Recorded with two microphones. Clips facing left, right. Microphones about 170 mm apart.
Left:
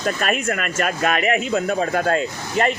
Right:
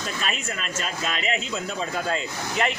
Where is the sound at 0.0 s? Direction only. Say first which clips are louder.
Left 9 dB; 55° left (ahead or behind).